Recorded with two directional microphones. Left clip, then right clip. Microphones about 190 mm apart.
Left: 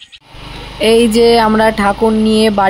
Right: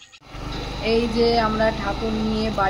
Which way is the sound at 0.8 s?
55° left (ahead or behind).